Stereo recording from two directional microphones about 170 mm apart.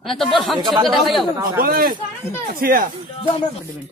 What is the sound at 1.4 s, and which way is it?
Speech, 60° right (ahead or behind).